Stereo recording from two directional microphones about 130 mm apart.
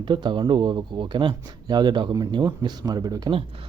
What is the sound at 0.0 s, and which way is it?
Speech, 35° right (ahead or behind).